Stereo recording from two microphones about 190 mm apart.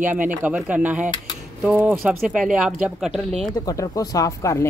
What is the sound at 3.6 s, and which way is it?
Speech, 20° left (ahead or behind).